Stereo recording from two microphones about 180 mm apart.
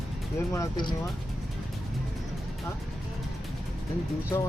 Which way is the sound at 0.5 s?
20° left (ahead or behind).